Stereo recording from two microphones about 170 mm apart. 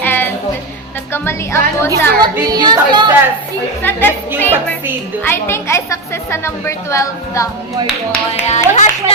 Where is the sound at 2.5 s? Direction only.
25° right (ahead or behind).